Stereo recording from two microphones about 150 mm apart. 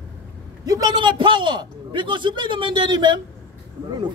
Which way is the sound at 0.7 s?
25° right (ahead or behind).